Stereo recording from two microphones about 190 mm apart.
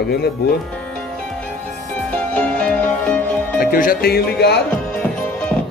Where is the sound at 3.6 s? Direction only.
50° left (ahead or behind).